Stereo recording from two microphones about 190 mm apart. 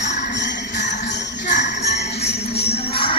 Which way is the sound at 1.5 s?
40° left (ahead or behind).